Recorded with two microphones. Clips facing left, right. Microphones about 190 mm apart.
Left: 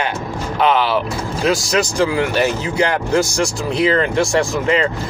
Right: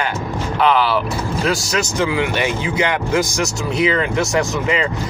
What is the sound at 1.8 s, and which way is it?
Speech, 35° left (ahead or behind).